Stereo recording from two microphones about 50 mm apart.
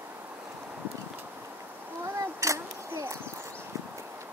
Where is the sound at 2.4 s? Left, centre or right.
Right.